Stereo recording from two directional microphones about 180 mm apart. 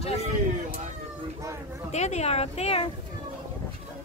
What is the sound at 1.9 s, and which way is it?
Speech, 40° left (ahead or behind).